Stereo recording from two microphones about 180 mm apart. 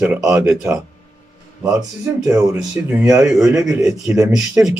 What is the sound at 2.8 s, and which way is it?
Speech, 10° right (ahead or behind).